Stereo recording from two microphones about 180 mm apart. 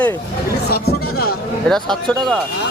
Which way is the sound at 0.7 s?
60° left (ahead or behind).